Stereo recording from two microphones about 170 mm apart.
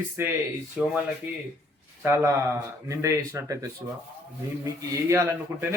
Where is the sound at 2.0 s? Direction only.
15° right (ahead or behind).